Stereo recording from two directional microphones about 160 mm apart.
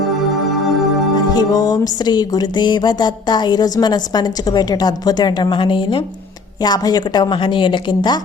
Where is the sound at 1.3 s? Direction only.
25° left (ahead or behind).